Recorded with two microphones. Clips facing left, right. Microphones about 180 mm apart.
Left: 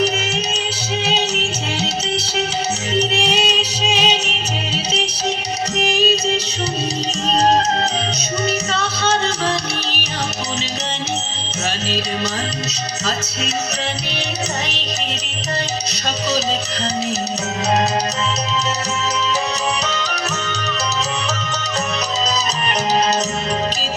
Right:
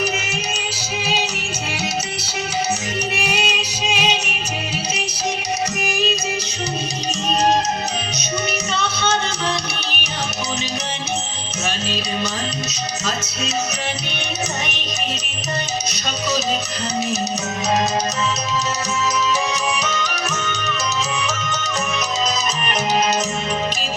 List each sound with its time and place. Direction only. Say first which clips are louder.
2.9 s music: left 5 dB; 30° left (ahead or behind)